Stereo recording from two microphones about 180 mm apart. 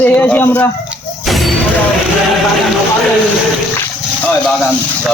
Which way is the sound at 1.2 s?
Centre (ahead or behind).